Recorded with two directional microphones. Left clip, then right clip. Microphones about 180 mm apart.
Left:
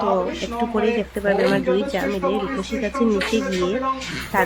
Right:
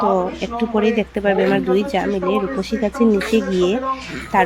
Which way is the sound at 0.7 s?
10° right (ahead or behind).